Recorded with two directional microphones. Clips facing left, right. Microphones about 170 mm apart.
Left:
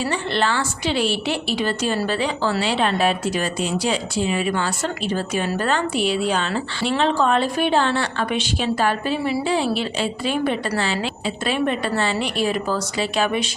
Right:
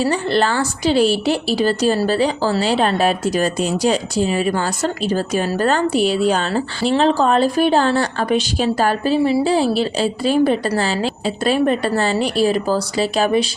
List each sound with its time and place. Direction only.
0.0 s a woman's voice: 40° right (ahead or behind)